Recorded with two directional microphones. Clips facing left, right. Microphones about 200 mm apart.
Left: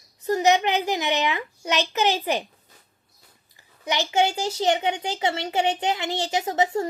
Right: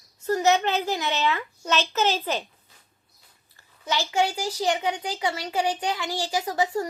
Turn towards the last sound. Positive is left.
turn(degrees=25)  # may be behind; listen again after turning